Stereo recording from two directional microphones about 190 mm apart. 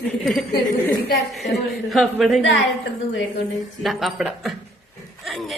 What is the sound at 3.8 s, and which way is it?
Speech, centre (ahead or behind).